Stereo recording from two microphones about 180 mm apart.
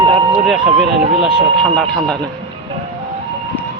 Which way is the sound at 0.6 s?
35° right (ahead or behind).